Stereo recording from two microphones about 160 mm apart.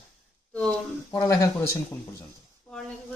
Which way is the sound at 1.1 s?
20° left (ahead or behind).